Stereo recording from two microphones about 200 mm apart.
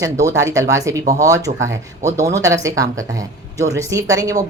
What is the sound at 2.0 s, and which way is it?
Speech, 35° right (ahead or behind).